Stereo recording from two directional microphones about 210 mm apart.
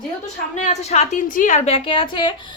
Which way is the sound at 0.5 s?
30° left (ahead or behind).